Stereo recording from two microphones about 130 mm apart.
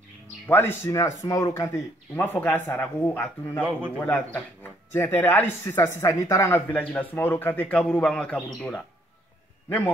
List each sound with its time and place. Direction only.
0.5 s speech: 15° left (ahead or behind)
6.7 s speech: 10° left (ahead or behind)